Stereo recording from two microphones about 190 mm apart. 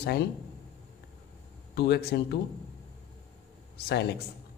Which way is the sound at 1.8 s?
60° left (ahead or behind).